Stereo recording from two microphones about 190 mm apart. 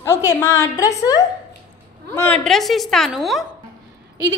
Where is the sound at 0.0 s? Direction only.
15° left (ahead or behind).